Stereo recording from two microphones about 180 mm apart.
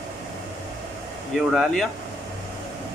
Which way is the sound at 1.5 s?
Centre (ahead or behind).